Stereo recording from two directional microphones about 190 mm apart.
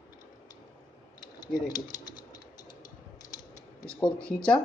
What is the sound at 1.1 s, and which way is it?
Typing, 20° left (ahead or behind).